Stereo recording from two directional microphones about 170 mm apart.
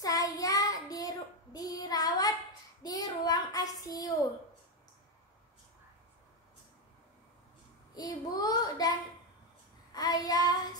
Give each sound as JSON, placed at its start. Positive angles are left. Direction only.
{"t": 0.0, "sound": "child singing", "side_deg": 20}
{"t": 7.9, "sound": "child singing", "side_deg": 20}
{"t": 9.9, "sound": "child singing", "side_deg": 20}